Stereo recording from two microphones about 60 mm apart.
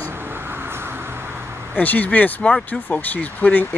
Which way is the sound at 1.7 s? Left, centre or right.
Left.